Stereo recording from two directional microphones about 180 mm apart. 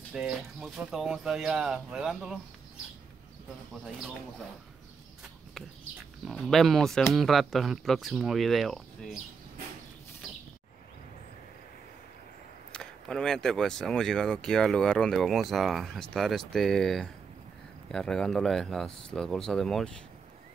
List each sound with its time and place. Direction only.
0.1 s speech: 5° right (ahead or behind)
6.2 s speech: centre (ahead or behind)
12.7 s speech: 5° left (ahead or behind)